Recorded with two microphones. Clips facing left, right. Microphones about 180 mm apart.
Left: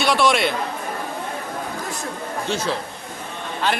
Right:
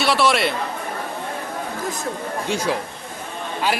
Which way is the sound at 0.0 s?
Centre (ahead or behind).